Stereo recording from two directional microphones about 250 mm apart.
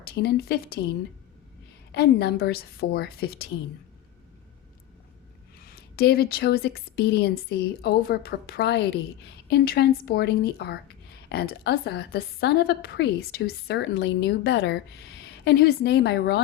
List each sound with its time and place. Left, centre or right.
0.0 s a woman's voice: left
1.9 s a woman's voice: left
5.5 s a woman's voice: left